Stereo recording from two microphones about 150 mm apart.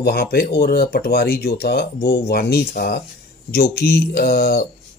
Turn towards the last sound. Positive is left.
turn(degrees=90)